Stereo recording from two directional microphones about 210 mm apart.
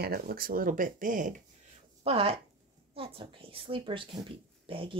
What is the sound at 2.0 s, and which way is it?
Speech, 30° right (ahead or behind).